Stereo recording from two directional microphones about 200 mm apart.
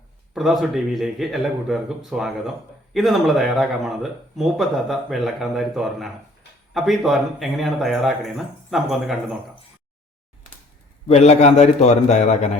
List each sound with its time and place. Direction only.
0.3 s speech: centre (ahead or behind)
11.1 s a man's voice: 30° left (ahead or behind)